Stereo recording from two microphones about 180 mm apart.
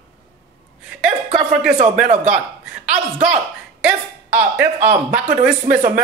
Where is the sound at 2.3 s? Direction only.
5° right (ahead or behind).